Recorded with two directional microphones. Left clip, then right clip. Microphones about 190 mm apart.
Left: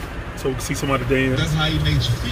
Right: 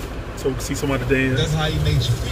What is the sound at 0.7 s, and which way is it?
Speech, 25° left (ahead or behind).